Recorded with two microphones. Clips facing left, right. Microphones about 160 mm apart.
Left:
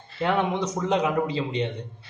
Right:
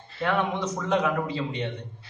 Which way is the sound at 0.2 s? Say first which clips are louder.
Left 2 dB; 20° left (ahead or behind).